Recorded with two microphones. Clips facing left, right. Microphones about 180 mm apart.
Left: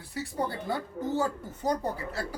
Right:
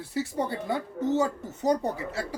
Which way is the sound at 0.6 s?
20° right (ahead or behind).